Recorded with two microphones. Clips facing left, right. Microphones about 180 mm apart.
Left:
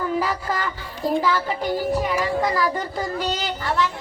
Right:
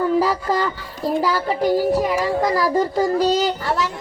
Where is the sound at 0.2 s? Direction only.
35° right (ahead or behind).